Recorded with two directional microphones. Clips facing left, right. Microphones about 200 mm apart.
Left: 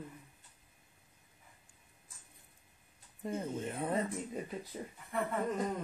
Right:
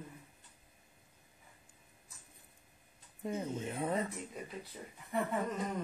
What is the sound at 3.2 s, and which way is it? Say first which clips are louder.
Speech: even; 10° right (ahead or behind).